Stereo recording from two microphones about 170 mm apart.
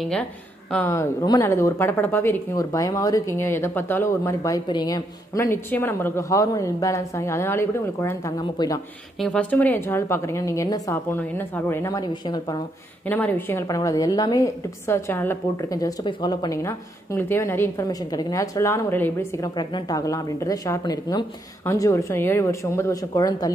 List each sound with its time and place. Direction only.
0.0 s speech: 5° left (ahead or behind)
0.8 s speech: 15° left (ahead or behind)
9.2 s speech: 5° left (ahead or behind); by 12.6 s 25° left (ahead or behind)
13.0 s a woman's voice: 10° left (ahead or behind)